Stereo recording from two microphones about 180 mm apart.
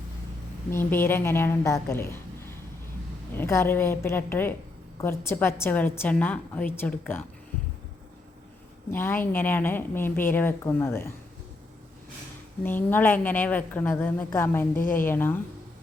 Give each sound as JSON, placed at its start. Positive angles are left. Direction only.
{"t": 0.7, "sound": "a woman's voice", "side_deg": 10}
{"t": 8.9, "sound": "a woman's voice", "side_deg": 10}
{"t": 12.6, "sound": "a woman's voice", "side_deg": 10}
{"t": 14.8, "sound": "a woman's voice", "side_deg": 50}
{"t": 15.0, "sound": "a woman's voice", "side_deg": 10}